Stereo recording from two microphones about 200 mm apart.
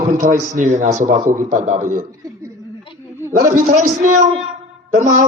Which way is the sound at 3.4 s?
40° right (ahead or behind).